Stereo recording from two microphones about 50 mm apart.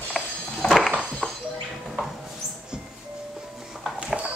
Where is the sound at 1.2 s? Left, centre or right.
Left.